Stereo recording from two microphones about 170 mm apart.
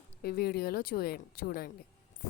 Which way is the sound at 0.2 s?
65° left (ahead or behind).